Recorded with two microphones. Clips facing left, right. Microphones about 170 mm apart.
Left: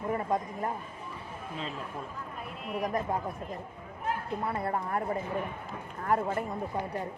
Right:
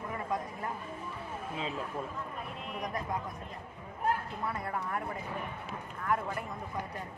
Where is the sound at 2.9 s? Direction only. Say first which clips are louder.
Left 5 dB; 35° left (ahead or behind).